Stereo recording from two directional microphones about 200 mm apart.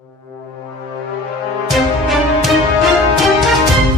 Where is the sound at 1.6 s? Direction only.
Centre (ahead or behind).